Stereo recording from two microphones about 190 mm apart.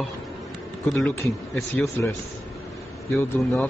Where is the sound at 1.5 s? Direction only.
10° left (ahead or behind).